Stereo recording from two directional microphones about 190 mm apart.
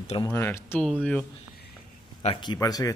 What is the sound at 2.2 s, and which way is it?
Speech, 25° left (ahead or behind).